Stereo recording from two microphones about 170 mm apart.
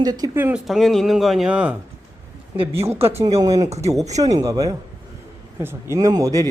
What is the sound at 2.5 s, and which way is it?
Speech, 30° right (ahead or behind).